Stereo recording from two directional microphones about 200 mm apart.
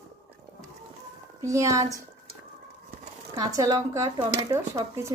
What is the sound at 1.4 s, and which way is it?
Speech, 15° right (ahead or behind).